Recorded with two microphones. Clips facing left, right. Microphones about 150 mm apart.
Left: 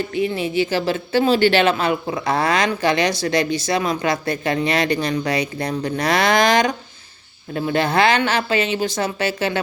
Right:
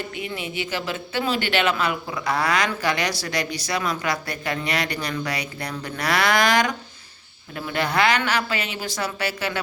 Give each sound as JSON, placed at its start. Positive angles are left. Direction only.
{"t": 0.1, "sound": "speech", "side_deg": 30}